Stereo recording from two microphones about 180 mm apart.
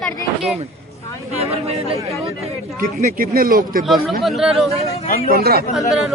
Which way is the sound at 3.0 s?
50° right (ahead or behind).